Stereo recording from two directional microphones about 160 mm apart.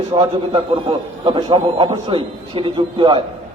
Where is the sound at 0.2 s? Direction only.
30° right (ahead or behind).